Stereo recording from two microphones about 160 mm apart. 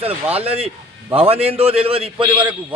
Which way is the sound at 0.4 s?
35° right (ahead or behind).